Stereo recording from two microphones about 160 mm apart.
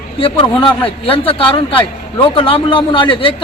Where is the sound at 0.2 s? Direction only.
35° left (ahead or behind).